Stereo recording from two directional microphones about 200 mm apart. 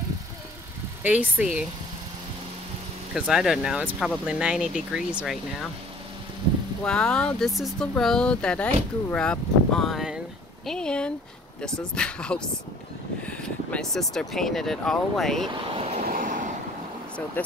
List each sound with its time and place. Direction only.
1.0 s speech: 5° right (ahead or behind)
3.2 s speech: centre (ahead or behind)
6.8 s speech: 5° left (ahead or behind)
15.7 s vehicle: 30° right (ahead or behind)
16.1 s waves: 45° right (ahead or behind)